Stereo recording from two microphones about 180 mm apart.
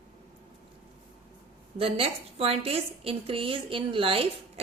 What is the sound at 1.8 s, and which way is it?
A woman's voice, 30° right (ahead or behind).